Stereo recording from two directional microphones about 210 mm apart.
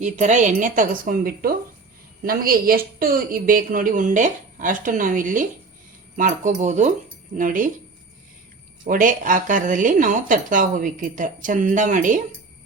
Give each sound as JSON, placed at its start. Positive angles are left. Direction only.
{"t": 0.0, "sound": "a woman's voice", "side_deg": -35}
{"t": 8.8, "sound": "a woman's voice", "side_deg": -40}